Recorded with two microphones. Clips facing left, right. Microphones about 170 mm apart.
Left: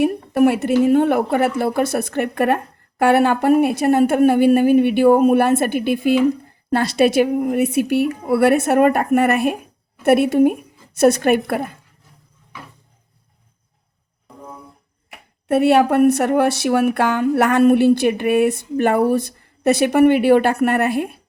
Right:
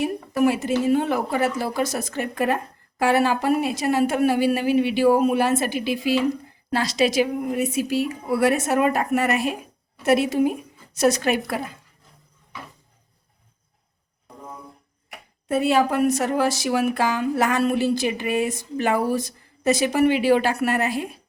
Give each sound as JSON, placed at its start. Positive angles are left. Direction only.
{"t": 0.0, "sound": "a woman's voice", "side_deg": 60}
{"t": 15.4, "sound": "a woman's voice", "side_deg": 65}